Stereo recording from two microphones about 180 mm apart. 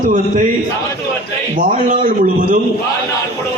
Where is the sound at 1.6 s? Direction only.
45° right (ahead or behind).